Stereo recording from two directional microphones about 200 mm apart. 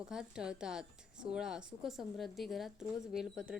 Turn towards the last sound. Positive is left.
turn(degrees=-5)  # may be behind; listen again after turning